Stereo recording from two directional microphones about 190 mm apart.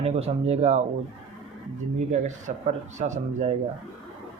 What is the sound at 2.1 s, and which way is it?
Speech, 40° right (ahead or behind).